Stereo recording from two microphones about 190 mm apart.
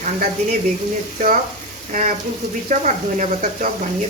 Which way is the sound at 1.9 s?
40° right (ahead or behind).